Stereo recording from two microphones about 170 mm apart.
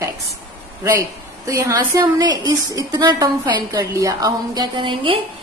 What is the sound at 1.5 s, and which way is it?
A woman's voice, 20° right (ahead or behind).